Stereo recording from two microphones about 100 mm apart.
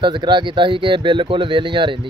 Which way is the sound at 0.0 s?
50° right (ahead or behind).